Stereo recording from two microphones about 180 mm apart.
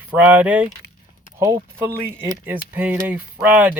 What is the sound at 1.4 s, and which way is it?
Speech, 20° right (ahead or behind).